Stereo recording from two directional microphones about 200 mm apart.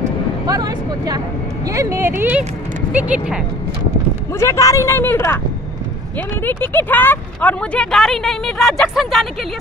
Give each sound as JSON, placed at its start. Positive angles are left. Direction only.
{"t": 0.5, "sound": "speech", "side_deg": -20}
{"t": 4.4, "sound": "speech", "side_deg": 15}
{"t": 6.4, "sound": "speech", "side_deg": 10}